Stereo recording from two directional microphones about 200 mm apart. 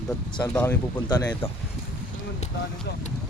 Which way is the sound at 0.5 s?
5° left (ahead or behind).